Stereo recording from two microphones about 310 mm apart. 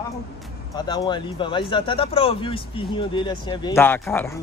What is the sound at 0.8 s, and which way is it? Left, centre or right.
Speech, centre.